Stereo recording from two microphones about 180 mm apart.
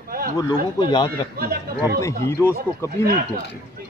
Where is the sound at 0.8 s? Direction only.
25° left (ahead or behind).